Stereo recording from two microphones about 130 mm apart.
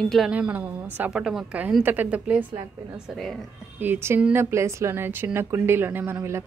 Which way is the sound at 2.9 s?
Centre (ahead or behind).